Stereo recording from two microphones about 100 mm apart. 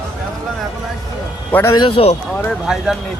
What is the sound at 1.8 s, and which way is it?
Speech, 65° left (ahead or behind).